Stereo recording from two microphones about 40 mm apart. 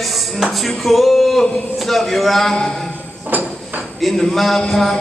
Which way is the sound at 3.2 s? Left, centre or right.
Right.